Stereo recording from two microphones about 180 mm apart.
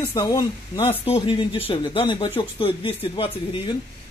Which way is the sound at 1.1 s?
30° left (ahead or behind).